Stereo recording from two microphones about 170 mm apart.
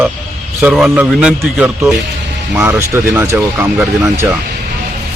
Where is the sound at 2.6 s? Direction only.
15° right (ahead or behind).